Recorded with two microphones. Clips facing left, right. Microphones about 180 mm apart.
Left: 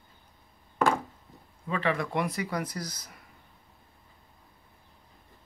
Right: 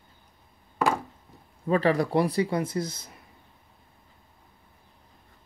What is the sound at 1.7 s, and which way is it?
Speech, 40° right (ahead or behind).